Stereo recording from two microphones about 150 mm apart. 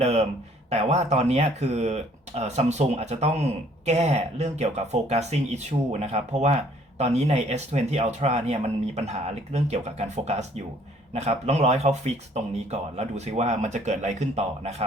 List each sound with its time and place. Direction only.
0.0 s speech: 45° right (ahead or behind)